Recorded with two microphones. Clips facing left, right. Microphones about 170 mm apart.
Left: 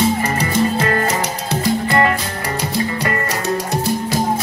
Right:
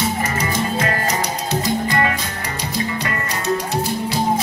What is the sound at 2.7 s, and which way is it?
Music, 35° left (ahead or behind).